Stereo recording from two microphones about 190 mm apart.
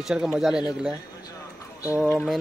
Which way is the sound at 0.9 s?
20° left (ahead or behind).